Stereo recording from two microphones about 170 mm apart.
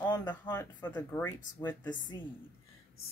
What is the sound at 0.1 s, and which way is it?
Speech, 25° left (ahead or behind).